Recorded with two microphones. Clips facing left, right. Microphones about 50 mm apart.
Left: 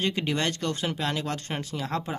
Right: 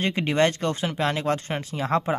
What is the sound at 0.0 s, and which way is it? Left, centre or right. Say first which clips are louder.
Speech: right 5 dB; right.